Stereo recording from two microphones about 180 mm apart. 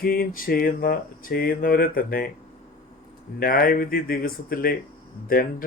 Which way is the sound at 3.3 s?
55° left (ahead or behind).